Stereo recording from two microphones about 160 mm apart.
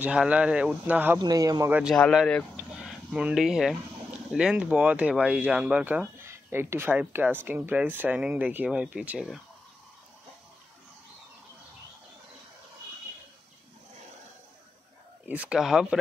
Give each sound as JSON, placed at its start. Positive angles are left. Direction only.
{"t": 0.0, "sound": "speech", "side_deg": -5}
{"t": 1.2, "sound": "speech", "side_deg": -25}
{"t": 1.7, "sound": "speech", "side_deg": -5}
{"t": 2.0, "sound": "speech", "side_deg": 5}
{"t": 2.5, "sound": "a sound", "side_deg": -5}
{"t": 4.3, "sound": "speech", "side_deg": -5}
{"t": 15.2, "sound": "speech", "side_deg": -10}